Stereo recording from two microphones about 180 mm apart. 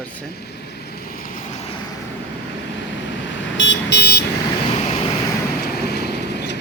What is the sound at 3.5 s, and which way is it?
Car alarm, 90° left.